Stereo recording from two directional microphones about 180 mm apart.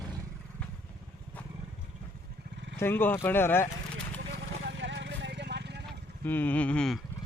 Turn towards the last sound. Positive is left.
turn(degrees=5)  # may be behind; listen again after turning